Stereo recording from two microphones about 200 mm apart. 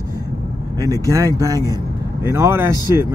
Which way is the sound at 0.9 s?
15° right (ahead or behind).